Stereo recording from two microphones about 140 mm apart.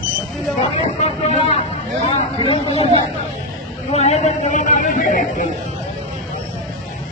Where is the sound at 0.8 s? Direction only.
50° left (ahead or behind).